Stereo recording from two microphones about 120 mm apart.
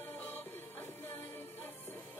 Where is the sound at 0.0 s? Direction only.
15° left (ahead or behind).